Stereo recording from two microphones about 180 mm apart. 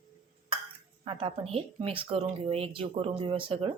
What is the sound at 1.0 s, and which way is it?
A woman's voice, 30° right (ahead or behind).